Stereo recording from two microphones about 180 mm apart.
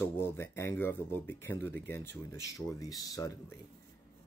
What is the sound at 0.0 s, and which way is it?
Speech, 15° left (ahead or behind).